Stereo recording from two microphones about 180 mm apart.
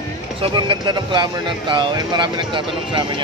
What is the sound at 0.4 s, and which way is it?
Speech, 25° right (ahead or behind).